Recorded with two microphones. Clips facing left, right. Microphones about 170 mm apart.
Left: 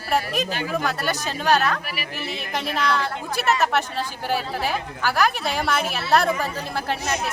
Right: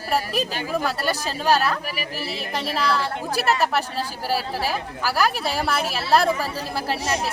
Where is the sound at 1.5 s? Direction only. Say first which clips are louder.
Left 1 dB; 5° right (ahead or behind).